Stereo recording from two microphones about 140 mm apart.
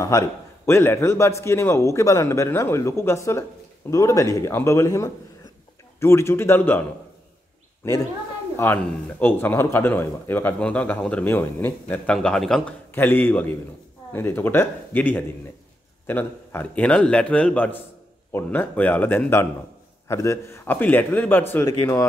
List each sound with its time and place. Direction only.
0.0 s a man's voice: 20° left (ahead or behind)
7.8 s speech: 20° left (ahead or behind)
12.9 s speech: 15° left (ahead or behind)